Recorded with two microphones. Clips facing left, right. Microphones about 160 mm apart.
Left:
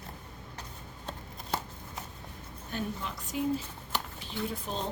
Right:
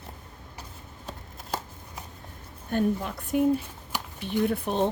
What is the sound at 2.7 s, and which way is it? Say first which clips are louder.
Speech: right 10 dB; 50° right (ahead or behind).